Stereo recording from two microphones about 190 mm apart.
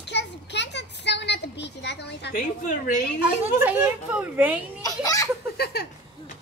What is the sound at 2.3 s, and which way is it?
Speech, 45° left (ahead or behind).